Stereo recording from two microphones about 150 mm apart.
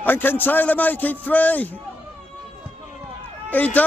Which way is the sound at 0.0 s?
15° left (ahead or behind).